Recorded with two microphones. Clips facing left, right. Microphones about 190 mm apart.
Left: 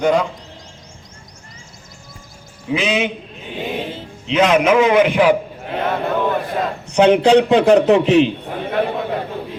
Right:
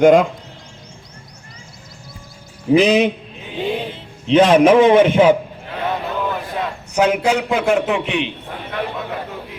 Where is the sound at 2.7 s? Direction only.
40° right (ahead or behind).